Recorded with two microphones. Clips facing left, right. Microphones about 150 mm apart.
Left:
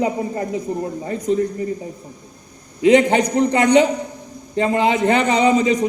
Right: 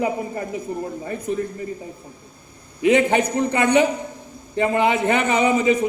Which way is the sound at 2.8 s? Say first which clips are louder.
Left 3 dB; 15° left (ahead or behind).